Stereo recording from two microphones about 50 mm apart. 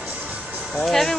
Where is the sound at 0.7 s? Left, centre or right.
Centre.